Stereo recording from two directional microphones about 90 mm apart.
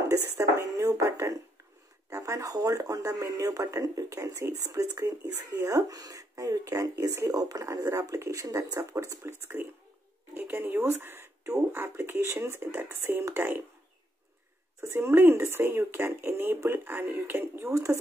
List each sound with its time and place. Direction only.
0.1 s a sound: 35° right (ahead or behind)
2.0 s speech: 35° right (ahead or behind)
9.4 s speech: 25° right (ahead or behind)
14.8 s speech: 30° right (ahead or behind)